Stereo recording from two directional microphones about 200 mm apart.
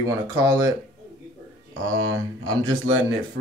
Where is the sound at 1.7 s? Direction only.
90° right.